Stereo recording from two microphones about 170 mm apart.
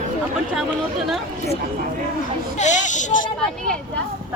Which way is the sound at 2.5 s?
45° left (ahead or behind).